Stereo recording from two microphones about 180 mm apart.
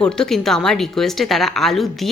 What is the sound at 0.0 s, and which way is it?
Speech, 5° left (ahead or behind).